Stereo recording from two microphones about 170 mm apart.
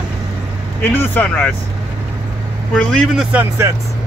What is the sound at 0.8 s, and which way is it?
Speech, 10° left (ahead or behind).